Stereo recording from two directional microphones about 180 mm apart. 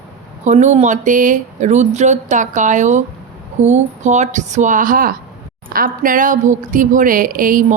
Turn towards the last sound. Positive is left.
turn(degrees=-50)  # may be behind; listen again after turning